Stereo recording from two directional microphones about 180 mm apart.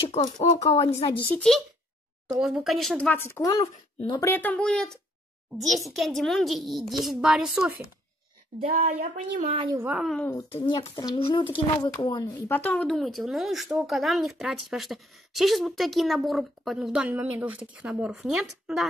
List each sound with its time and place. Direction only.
0.6 s speech: 25° left (ahead or behind)
1.3 s a woman's voice: 5° left (ahead or behind)
8.7 s speech: 35° right (ahead or behind)
9.8 s speech: centre (ahead or behind)
10.2 s a woman's voice: 15° left (ahead or behind)
10.6 s speech: 30° left (ahead or behind)
12.4 s speech: 10° left (ahead or behind)